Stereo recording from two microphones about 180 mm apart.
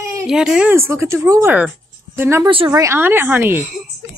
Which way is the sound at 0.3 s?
5° right (ahead or behind).